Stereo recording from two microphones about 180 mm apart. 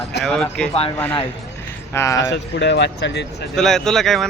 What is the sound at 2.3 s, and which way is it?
Speech, 70° left (ahead or behind).